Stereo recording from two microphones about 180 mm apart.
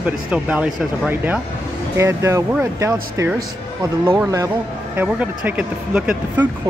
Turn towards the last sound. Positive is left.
turn(degrees=-5)  # may be behind; listen again after turning